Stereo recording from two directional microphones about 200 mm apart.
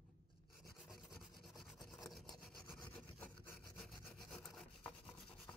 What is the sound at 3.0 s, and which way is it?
Sawing, 5° left (ahead or behind).